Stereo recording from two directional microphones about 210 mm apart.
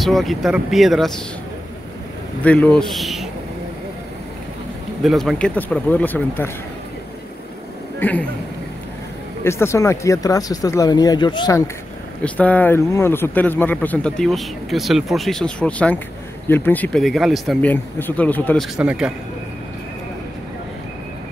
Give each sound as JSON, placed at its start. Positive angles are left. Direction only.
{"t": 0.0, "sound": "speech", "side_deg": 0}
{"t": 2.4, "sound": "speech", "side_deg": 5}
{"t": 5.0, "sound": "speech", "side_deg": 0}
{"t": 8.0, "sound": "speech", "side_deg": 5}
{"t": 9.4, "sound": "speech", "side_deg": 10}
{"t": 18.8, "sound": "speech", "side_deg": -5}